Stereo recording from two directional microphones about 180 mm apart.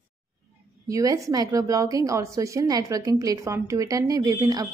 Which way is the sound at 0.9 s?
20° right (ahead or behind).